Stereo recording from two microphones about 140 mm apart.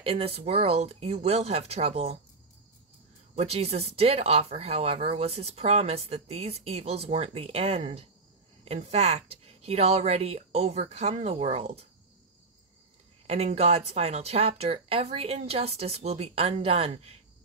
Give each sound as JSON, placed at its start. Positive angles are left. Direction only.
{"t": 0.0, "sound": "speech", "side_deg": -45}
{"t": 3.3, "sound": "speech", "side_deg": -45}
{"t": 13.3, "sound": "speech", "side_deg": -50}